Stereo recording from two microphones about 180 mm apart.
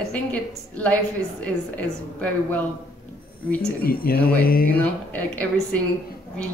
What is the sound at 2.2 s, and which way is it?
Speech, 10° left (ahead or behind).